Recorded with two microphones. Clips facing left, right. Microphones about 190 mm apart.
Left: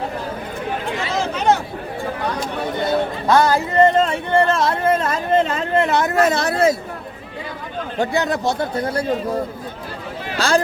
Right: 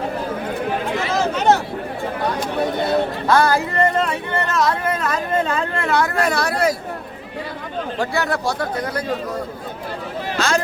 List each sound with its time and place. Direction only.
3.2 s speech: 20° left (ahead or behind)
7.9 s speech: 20° left (ahead or behind)
10.3 s a sound: 35° left (ahead or behind)